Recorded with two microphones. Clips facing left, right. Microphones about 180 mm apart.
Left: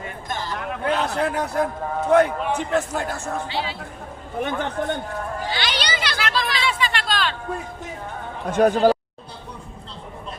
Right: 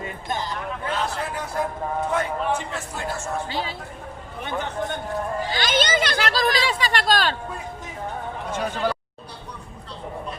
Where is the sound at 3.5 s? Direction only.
45° right (ahead or behind).